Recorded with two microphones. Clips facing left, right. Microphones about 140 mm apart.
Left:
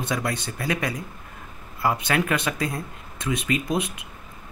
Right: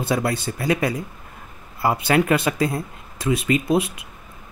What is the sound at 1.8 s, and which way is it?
Speech, 30° right (ahead or behind).